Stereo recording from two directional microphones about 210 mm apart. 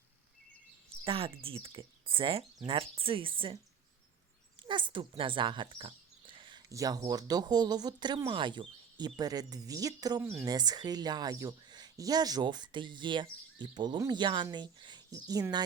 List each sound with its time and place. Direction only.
1.0 s speech: 25° right (ahead or behind)
4.6 s speech: 20° right (ahead or behind)